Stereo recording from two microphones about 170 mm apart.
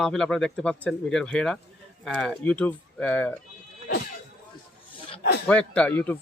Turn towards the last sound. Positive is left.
turn(degrees=10)  # may be behind; listen again after turning